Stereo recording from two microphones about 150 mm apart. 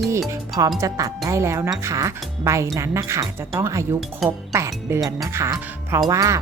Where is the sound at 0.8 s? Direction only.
25° right (ahead or behind).